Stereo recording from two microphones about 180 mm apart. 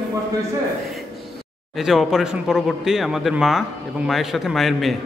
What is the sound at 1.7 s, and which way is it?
A man's voice, centre (ahead or behind).